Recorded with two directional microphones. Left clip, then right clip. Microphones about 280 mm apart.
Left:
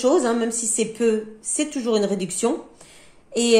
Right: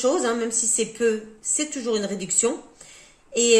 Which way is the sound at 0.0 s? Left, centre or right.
Centre.